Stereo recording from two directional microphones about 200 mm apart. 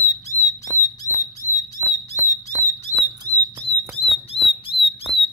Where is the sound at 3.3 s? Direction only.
20° right (ahead or behind).